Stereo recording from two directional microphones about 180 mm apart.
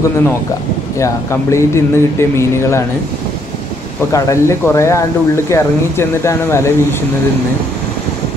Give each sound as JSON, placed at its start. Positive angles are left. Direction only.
{"t": 0.9, "sound": "speech", "side_deg": 15}
{"t": 4.1, "sound": "speech", "side_deg": 15}